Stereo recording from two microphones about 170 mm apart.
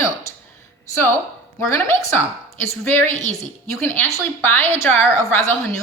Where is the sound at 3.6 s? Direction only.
15° left (ahead or behind).